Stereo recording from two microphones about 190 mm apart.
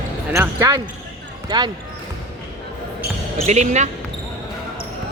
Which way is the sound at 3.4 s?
35° right (ahead or behind).